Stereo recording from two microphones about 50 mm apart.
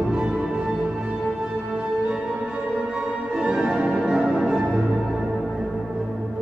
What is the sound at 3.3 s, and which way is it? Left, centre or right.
Music, centre.